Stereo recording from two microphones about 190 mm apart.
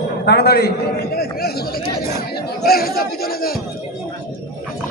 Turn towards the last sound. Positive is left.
turn(degrees=55)  # may be behind; listen again after turning